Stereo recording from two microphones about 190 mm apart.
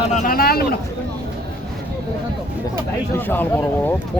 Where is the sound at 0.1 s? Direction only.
45° left (ahead or behind).